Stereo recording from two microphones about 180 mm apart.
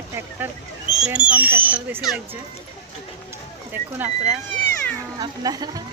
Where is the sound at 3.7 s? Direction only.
10° right (ahead or behind).